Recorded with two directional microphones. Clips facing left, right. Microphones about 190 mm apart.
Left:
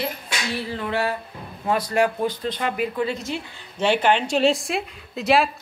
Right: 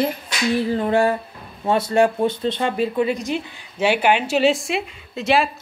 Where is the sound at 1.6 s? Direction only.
25° right (ahead or behind).